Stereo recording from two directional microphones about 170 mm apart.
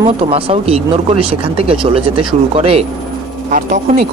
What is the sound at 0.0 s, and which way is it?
Speech, 35° right (ahead or behind).